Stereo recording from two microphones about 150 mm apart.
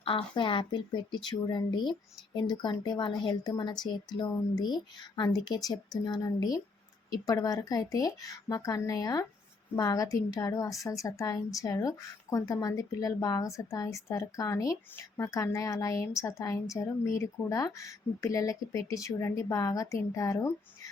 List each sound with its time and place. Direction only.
0.0 s a woman's voice: 35° left (ahead or behind)